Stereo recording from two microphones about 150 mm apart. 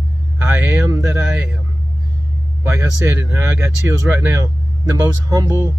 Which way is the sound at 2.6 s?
20° right (ahead or behind).